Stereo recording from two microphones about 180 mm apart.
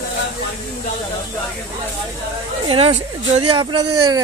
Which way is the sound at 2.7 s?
35° right (ahead or behind).